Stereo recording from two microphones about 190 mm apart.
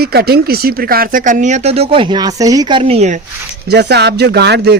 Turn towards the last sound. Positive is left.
turn(degrees=-60)  # may be behind; listen again after turning